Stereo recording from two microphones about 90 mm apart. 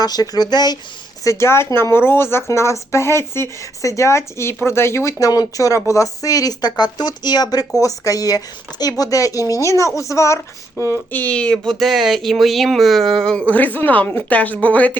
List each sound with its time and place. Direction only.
0.0 s speech: 45° left (ahead or behind)
1.2 s speech: 35° left (ahead or behind)
10.9 s speech: 20° left (ahead or behind)
13.5 s a woman's voice: 20° left (ahead or behind)